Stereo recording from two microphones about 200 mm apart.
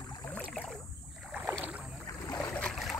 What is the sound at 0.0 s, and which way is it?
Boat, 20° left (ahead or behind).